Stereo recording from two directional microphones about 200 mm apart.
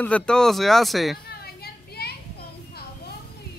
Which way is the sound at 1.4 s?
50° left (ahead or behind).